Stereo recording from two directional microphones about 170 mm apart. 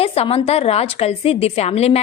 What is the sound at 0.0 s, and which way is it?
A woman's voice, 35° left (ahead or behind).